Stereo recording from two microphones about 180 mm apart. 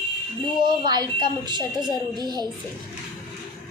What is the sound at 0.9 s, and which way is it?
Speech, 25° right (ahead or behind).